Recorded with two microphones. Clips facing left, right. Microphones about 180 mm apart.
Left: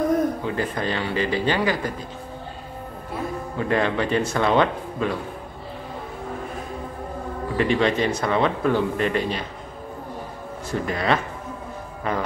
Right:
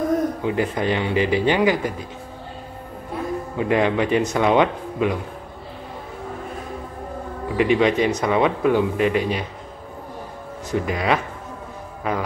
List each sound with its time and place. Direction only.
0.4 s speech: 15° right (ahead or behind)
3.5 s speech: 15° right (ahead or behind)
7.5 s speech: 10° right (ahead or behind)
10.7 s speech: 10° right (ahead or behind)